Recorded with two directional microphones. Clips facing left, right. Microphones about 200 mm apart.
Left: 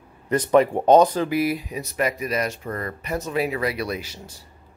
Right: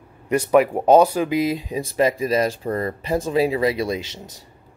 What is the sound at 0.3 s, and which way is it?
Speech, 10° right (ahead or behind).